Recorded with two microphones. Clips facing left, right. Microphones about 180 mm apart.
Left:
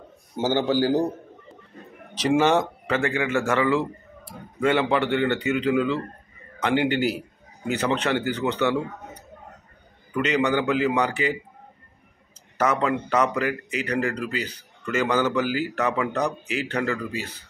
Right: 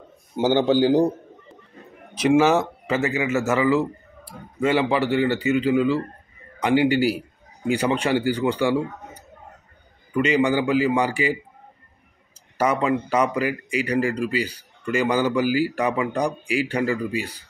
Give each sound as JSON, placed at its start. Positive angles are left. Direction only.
{"t": 0.4, "sound": "speech", "side_deg": -15}
{"t": 2.2, "sound": "speech", "side_deg": -5}
{"t": 10.1, "sound": "speech", "side_deg": -10}
{"t": 12.5, "sound": "speech", "side_deg": -10}